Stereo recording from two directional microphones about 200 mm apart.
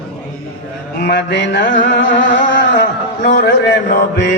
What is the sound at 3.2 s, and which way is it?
Mantra, 50° left (ahead or behind).